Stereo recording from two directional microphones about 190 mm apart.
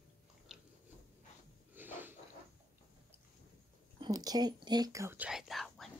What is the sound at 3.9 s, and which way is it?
Speech, 20° right (ahead or behind).